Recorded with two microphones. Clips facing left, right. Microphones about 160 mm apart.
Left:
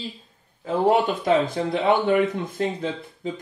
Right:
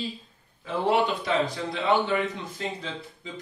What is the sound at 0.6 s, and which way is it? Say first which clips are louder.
A man's voice: left 4 dB; 45° left (ahead or behind).